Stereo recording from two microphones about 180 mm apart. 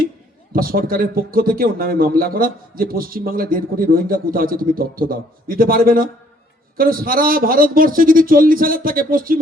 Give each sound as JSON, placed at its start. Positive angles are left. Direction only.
{"t": 0.5, "sound": "speech", "side_deg": -55}